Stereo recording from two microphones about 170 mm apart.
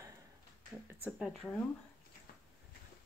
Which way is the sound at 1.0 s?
Centre (ahead or behind).